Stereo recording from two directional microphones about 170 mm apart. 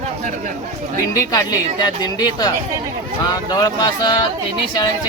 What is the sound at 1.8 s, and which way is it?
Speech, 25° left (ahead or behind).